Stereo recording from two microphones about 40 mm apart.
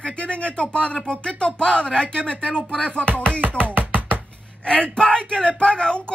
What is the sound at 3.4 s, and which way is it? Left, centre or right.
Music, right.